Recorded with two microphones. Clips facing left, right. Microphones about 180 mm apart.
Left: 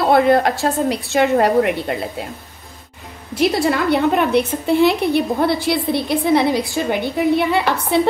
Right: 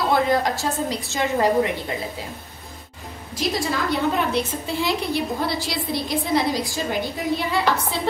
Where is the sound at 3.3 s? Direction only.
65° left (ahead or behind).